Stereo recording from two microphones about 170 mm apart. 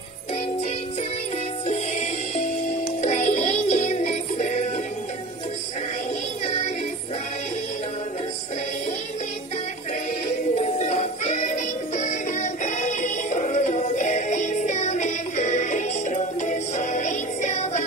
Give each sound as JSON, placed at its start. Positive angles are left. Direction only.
{"t": 1.7, "sound": "music", "side_deg": 40}
{"t": 6.4, "sound": "music", "side_deg": 40}
{"t": 10.5, "sound": "music", "side_deg": 40}